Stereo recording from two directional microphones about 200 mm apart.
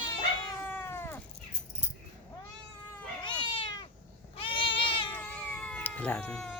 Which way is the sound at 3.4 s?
25° left (ahead or behind).